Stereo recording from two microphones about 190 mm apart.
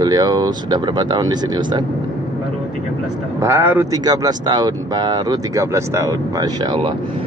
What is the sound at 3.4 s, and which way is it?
Speech, 10° right (ahead or behind).